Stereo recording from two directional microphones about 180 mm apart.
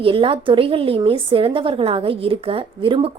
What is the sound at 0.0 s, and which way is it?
A woman's voice, 30° right (ahead or behind).